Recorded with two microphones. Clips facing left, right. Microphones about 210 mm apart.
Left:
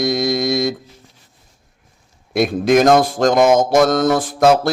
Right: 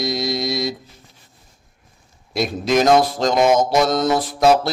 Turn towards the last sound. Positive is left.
turn(degrees=50)  # may be behind; listen again after turning